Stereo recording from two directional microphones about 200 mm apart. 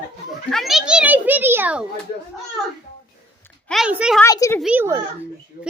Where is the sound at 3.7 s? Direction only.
5° right (ahead or behind).